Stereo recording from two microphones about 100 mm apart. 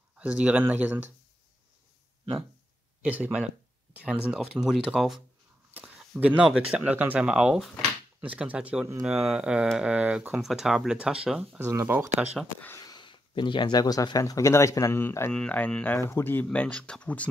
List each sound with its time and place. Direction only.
0.2 s speech: 10° right (ahead or behind)
3.0 s speech: 15° right (ahead or behind)
11.7 s speech: 30° right (ahead or behind)
12.8 s speech: 50° left (ahead or behind); by 15.3 s 25° left (ahead or behind)
15.3 s speech: 10° left (ahead or behind)
16.0 s speech: 25° left (ahead or behind)
16.4 s speech: 10° left (ahead or behind)